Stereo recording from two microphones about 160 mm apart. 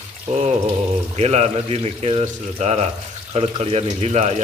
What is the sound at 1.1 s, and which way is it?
Speech, 45° right (ahead or behind).